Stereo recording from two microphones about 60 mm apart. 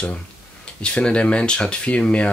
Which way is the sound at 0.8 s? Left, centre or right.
Centre.